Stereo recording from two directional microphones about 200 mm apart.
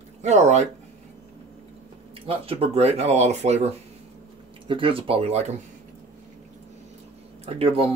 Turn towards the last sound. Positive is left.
turn(degrees=-30)  # may be behind; listen again after turning